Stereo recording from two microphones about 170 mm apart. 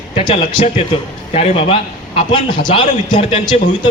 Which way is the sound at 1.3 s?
35° left (ahead or behind).